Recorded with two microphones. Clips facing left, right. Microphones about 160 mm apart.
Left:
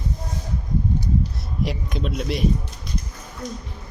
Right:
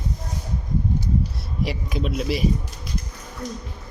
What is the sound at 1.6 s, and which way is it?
Speech, centre (ahead or behind).